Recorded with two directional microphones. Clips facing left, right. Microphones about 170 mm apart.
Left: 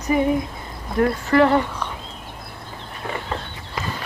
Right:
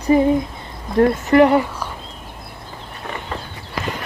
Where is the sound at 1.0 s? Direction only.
20° right (ahead or behind).